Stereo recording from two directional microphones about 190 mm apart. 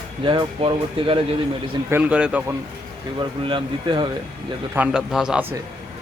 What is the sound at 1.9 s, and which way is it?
Speech, 5° right (ahead or behind).